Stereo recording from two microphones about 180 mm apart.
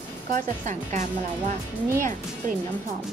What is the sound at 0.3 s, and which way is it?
Speech, 40° right (ahead or behind).